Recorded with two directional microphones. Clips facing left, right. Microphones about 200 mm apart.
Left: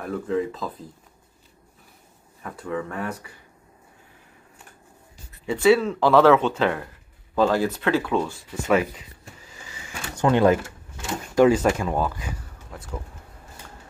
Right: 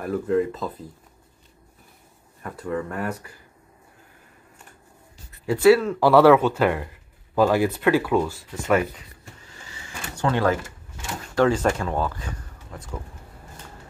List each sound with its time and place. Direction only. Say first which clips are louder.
0.0 s speech: right 3 dB; centre (ahead or behind)
2.4 s speech: right 1 dB; centre (ahead or behind)
5.5 s speech: right 2 dB; 5° right (ahead or behind)
10.2 s speech: left 4 dB; 20° left (ahead or behind)